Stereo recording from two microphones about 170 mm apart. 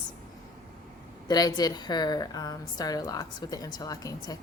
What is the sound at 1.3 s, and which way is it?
A woman's voice, 25° left (ahead or behind).